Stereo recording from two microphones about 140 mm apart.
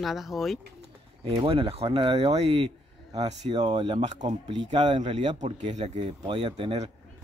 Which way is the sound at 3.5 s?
35° right (ahead or behind).